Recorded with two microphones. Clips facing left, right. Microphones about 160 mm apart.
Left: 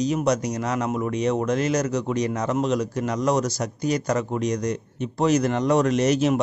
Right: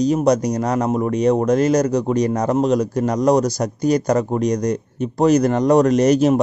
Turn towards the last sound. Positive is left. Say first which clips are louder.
# right 6 dB
turn(degrees=-40)  # may be behind; listen again after turning